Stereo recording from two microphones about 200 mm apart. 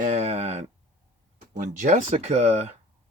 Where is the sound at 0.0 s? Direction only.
35° right (ahead or behind).